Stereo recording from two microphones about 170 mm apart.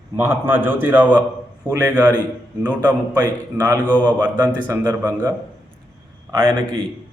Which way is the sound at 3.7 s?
10° left (ahead or behind).